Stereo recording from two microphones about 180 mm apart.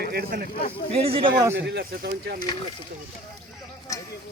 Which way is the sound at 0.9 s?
35° right (ahead or behind).